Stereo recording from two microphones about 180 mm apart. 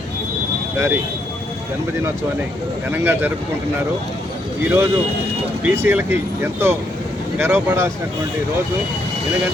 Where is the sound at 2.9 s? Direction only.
10° right (ahead or behind).